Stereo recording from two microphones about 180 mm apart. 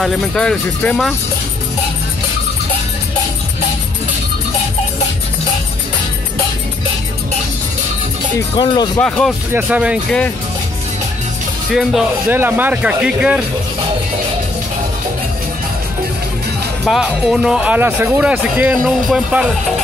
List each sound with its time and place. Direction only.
0.0 s speech: 5° left (ahead or behind)
8.5 s speech: 25° left (ahead or behind)
9.5 s speech: 10° right (ahead or behind)
11.7 s speech: centre (ahead or behind)
16.8 s speech: centre (ahead or behind)